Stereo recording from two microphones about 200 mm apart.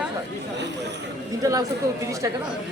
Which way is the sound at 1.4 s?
15° right (ahead or behind).